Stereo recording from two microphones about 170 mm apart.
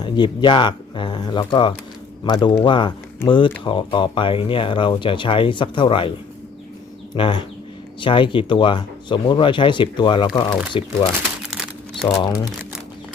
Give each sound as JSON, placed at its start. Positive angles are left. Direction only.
{"t": 0.0, "sound": "speech", "side_deg": 30}
{"t": 7.2, "sound": "speech", "side_deg": 30}